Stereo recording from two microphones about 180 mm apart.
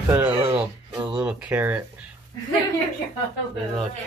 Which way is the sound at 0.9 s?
25° right (ahead or behind).